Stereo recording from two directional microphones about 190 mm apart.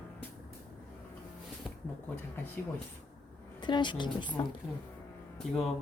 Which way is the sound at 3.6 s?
25° left (ahead or behind).